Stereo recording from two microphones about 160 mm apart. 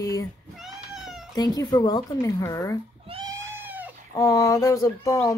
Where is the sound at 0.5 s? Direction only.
Centre (ahead or behind).